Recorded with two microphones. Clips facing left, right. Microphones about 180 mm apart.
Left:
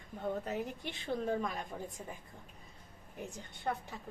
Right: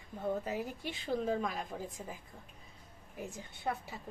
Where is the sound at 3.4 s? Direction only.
5° right (ahead or behind).